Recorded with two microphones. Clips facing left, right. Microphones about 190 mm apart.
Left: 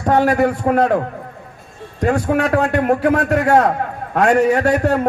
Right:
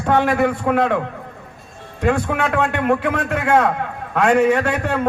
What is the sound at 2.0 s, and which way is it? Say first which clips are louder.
A man's voice: left 2 dB; 40° left (ahead or behind).